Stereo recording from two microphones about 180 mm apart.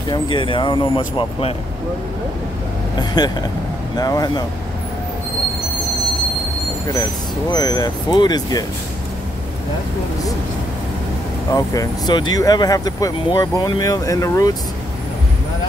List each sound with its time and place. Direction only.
0.1 s speech: 25° left (ahead or behind)
3.0 s speech: 20° left (ahead or behind)
7.5 s speech: 20° left (ahead or behind)
11.5 s speech: 20° left (ahead or behind)